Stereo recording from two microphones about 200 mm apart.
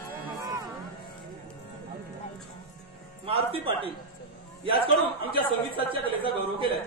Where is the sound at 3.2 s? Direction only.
30° right (ahead or behind).